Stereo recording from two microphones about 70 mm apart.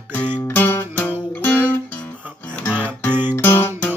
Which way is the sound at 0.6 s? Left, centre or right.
Left.